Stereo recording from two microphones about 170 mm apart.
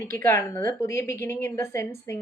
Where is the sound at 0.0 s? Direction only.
15° left (ahead or behind).